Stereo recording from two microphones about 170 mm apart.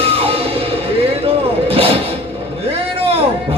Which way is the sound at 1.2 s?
35° right (ahead or behind).